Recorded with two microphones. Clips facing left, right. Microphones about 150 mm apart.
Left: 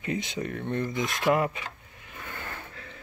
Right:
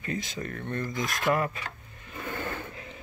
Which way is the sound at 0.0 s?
20° left (ahead or behind).